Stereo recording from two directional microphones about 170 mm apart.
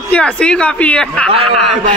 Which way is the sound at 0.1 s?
5° left (ahead or behind).